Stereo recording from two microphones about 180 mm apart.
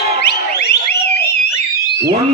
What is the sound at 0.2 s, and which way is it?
Car alarm, 65° left (ahead or behind).